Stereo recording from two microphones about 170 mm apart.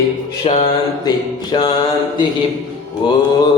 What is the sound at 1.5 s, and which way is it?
Music, 25° left (ahead or behind).